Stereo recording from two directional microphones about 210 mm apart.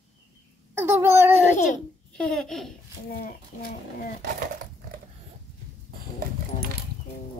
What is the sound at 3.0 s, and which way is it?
Speech, 40° left (ahead or behind).